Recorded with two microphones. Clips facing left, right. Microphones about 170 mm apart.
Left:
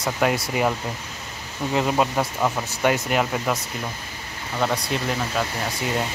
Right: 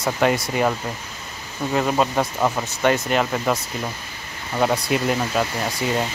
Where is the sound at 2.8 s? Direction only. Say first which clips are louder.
Right 2 dB; 10° left (ahead or behind).